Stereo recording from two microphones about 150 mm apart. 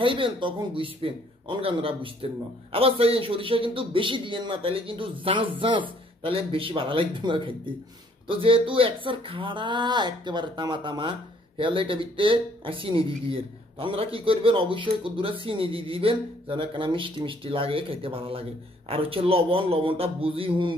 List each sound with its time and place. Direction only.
0.0 s speech: 35° right (ahead or behind)